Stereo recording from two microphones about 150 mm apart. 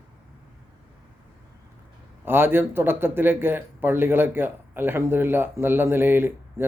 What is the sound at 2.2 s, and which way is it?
Speech, 15° right (ahead or behind).